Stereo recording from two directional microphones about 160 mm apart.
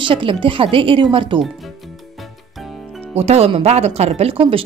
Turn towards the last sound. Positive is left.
turn(degrees=-35)  # may be behind; listen again after turning